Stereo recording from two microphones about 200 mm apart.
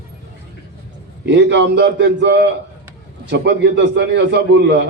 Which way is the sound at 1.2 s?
60° right (ahead or behind).